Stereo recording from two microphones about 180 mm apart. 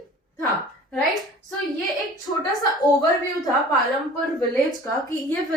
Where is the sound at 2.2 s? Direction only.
20° left (ahead or behind).